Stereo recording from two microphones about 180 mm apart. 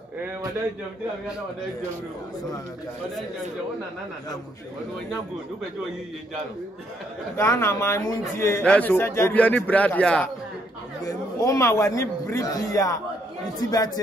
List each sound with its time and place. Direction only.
7.3 s a man's voice: 15° left (ahead or behind)
11.1 s a man's voice: 20° left (ahead or behind)